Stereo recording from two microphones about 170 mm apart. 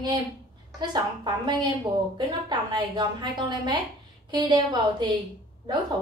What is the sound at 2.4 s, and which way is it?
A woman's voice, 25° right (ahead or behind).